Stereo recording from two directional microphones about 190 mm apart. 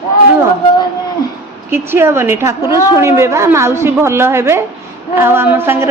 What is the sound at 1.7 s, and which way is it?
A woman's voice, 10° right (ahead or behind).